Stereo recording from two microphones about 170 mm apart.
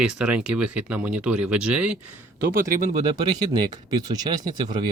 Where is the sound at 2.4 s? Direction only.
55° right (ahead or behind).